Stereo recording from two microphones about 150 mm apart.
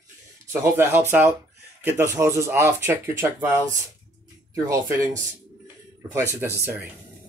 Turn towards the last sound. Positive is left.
turn(degrees=-15)  # may be behind; listen again after turning